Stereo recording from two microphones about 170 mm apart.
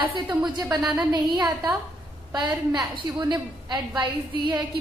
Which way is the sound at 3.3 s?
25° right (ahead or behind).